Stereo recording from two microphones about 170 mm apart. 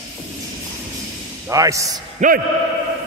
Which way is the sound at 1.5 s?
20° right (ahead or behind).